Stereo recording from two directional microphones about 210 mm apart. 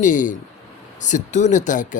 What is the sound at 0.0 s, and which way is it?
Speech, 40° left (ahead or behind).